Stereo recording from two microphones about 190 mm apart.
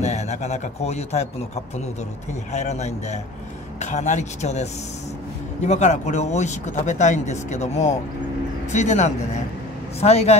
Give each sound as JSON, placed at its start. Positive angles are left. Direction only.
{"t": 0.0, "sound": "speech", "side_deg": 35}